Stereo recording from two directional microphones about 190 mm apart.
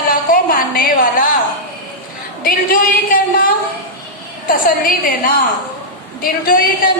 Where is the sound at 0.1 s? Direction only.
50° left (ahead or behind).